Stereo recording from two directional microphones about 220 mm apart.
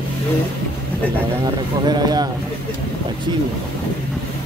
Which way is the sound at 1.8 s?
20° right (ahead or behind).